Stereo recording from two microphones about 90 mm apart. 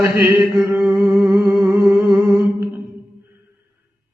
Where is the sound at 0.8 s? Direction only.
10° right (ahead or behind).